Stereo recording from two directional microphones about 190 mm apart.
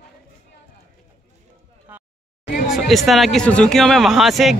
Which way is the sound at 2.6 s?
Centre (ahead or behind).